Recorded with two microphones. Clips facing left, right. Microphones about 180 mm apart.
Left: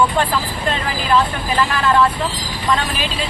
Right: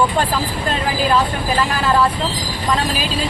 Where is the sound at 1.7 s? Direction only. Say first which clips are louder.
Left 2 dB; 35° right (ahead or behind).